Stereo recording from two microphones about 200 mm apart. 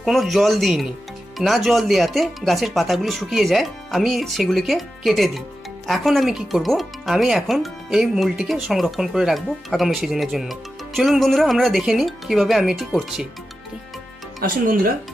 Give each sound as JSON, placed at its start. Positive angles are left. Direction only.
{"t": 0.0, "sound": "speech", "side_deg": 0}
{"t": 14.4, "sound": "speech", "side_deg": -45}